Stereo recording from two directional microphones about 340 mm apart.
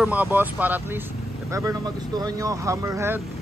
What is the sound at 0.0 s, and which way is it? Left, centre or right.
Speech, centre.